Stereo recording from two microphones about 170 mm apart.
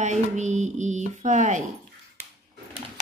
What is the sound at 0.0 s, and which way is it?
Speech, 45° right (ahead or behind).